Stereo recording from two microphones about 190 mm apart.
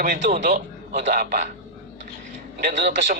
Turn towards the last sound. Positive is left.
turn(degrees=-40)  # may be behind; listen again after turning